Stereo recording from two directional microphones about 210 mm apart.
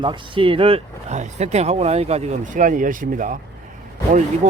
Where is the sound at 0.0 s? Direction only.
25° right (ahead or behind); by 3.3 s 40° right (ahead or behind).